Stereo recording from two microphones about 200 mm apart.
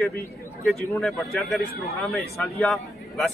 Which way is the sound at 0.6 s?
Centre (ahead or behind).